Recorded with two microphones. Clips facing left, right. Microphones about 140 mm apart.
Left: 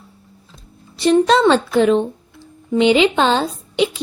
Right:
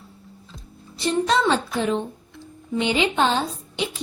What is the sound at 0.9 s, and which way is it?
A woman's voice, 85° left.